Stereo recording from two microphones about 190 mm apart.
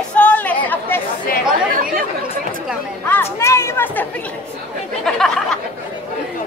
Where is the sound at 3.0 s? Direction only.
10° left (ahead or behind).